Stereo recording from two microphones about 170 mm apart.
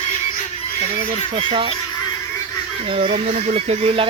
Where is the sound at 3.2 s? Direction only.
45° right (ahead or behind).